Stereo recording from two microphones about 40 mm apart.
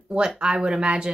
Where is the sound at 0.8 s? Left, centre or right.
Right.